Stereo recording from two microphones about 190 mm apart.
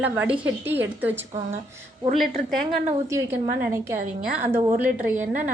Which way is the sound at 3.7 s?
15° right (ahead or behind).